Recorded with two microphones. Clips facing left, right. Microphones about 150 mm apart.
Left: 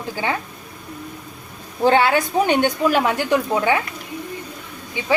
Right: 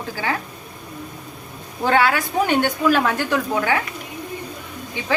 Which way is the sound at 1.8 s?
25° left (ahead or behind).